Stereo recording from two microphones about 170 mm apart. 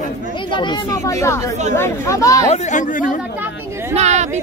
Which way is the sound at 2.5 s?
45° left (ahead or behind).